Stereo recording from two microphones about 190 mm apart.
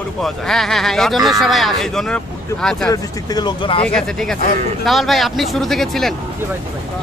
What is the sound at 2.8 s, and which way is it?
Speech, 20° left (ahead or behind).